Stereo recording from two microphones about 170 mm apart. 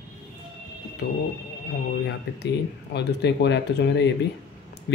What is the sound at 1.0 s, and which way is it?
Speech, 65° left (ahead or behind).